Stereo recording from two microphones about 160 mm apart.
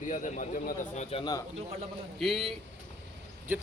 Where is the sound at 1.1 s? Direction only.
40° left (ahead or behind).